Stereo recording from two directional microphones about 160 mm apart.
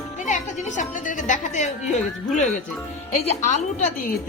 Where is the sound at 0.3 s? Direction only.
50° left (ahead or behind).